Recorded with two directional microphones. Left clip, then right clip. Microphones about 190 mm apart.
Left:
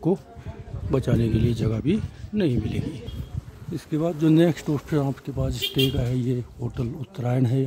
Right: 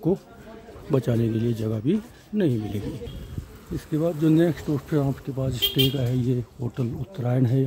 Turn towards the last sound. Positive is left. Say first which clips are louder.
# even
turn(degrees=5)  # may be behind; listen again after turning